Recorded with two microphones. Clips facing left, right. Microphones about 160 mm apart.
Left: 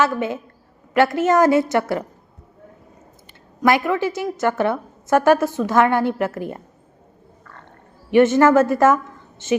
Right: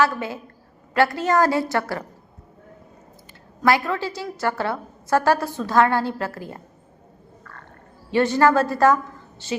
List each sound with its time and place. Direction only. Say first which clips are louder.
0.0 s a woman's voice: left 2 dB; 20° left (ahead or behind)
3.6 s a woman's voice: left 3 dB; 15° left (ahead or behind)
8.1 s a woman's voice: left 5 dB; 20° left (ahead or behind)